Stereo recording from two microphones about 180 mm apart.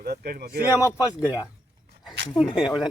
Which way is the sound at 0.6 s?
20° left (ahead or behind).